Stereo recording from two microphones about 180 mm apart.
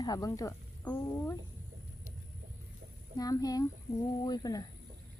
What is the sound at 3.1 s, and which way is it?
A child's voice, 20° left (ahead or behind).